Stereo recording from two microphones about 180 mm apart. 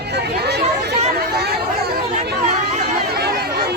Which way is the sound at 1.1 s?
60° right (ahead or behind).